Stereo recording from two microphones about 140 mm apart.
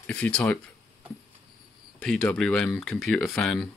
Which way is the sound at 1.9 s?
5° left (ahead or behind).